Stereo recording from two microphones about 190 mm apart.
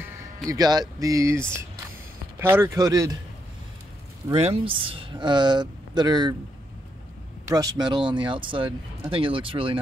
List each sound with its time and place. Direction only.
0.5 s speech: 20° right (ahead or behind)
4.3 s speech: 30° right (ahead or behind)
7.5 s speech: 20° right (ahead or behind)